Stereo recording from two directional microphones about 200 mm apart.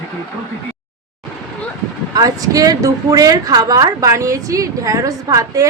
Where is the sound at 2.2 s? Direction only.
15° right (ahead or behind).